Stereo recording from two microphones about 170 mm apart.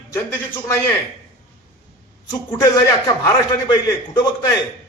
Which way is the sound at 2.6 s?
20° left (ahead or behind).